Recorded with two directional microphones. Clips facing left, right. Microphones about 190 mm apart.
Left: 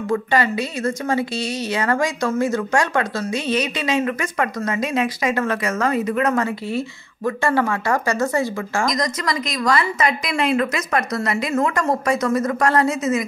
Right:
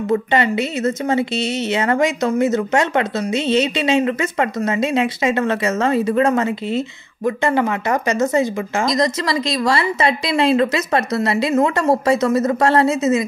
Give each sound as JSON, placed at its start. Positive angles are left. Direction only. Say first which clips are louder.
{"t": 0.1, "sound": "a woman's voice", "louder": "right 2 dB", "side_deg": -25}